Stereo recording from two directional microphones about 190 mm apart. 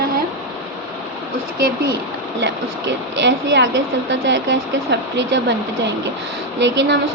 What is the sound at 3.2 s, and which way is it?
Speech, 70° right (ahead or behind).